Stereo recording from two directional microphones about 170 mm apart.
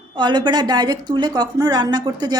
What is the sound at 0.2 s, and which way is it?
A woman's voice, 25° right (ahead or behind).